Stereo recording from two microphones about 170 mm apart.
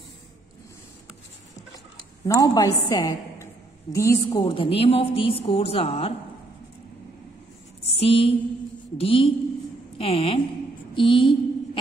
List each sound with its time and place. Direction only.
2.2 s a woman's voice: 20° left (ahead or behind)
4.4 s a woman's voice: 30° left (ahead or behind)
7.8 s a sound: 35° left (ahead or behind)
8.9 s a woman's voice: 35° left (ahead or behind)
11.0 s mantra: 30° left (ahead or behind)